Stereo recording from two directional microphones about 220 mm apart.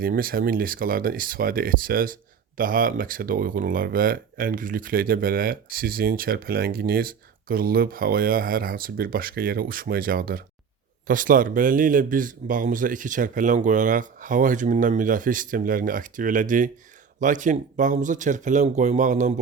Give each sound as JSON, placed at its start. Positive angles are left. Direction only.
{"t": 0.0, "sound": "speech", "side_deg": -40}